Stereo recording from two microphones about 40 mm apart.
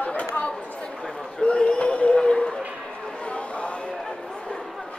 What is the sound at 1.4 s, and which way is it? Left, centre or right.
A man's voice, left.